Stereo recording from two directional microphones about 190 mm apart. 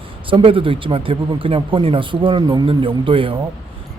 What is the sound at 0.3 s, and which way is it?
Speech, 25° right (ahead or behind).